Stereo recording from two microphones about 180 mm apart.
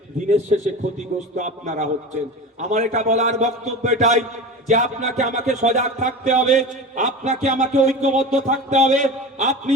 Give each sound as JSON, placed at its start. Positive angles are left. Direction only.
{"t": 0.3, "sound": "speech", "side_deg": -40}